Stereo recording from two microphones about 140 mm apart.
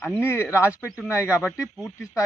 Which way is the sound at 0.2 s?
15° left (ahead or behind).